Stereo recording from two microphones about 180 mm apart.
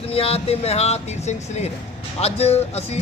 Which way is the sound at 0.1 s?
35° left (ahead or behind).